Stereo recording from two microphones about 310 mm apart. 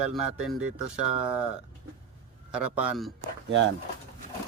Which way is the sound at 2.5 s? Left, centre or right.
Centre.